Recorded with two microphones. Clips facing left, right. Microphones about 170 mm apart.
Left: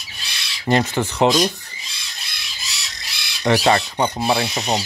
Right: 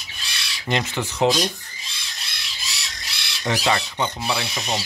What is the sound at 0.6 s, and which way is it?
Speech, 45° left (ahead or behind).